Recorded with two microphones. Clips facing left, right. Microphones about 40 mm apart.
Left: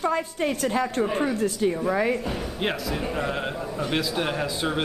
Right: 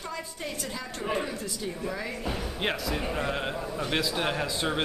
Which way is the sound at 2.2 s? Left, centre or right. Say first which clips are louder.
Left 3 dB; centre.